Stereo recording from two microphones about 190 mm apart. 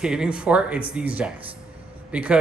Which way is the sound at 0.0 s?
5° right (ahead or behind).